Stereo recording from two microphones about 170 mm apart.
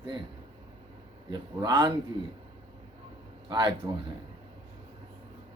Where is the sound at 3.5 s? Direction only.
25° right (ahead or behind).